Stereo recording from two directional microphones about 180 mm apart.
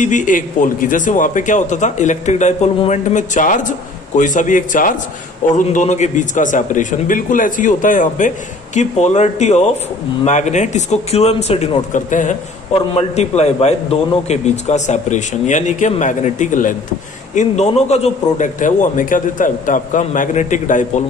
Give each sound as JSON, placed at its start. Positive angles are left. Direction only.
{"t": 0.0, "sound": "a man's voice", "side_deg": 45}